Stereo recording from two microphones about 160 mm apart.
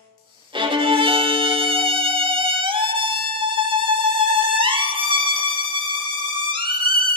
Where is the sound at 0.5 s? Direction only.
30° right (ahead or behind).